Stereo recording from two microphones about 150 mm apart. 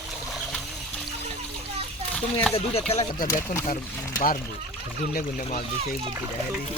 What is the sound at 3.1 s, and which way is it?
Speech, 65° left (ahead or behind).